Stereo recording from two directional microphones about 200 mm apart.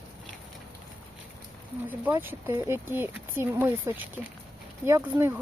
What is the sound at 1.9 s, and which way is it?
Speech, 10° right (ahead or behind).